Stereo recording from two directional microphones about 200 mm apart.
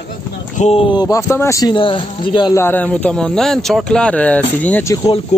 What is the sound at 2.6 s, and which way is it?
Speech, 10° left (ahead or behind).